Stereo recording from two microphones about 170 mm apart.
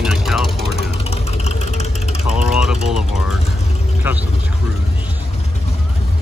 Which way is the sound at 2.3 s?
5° right (ahead or behind).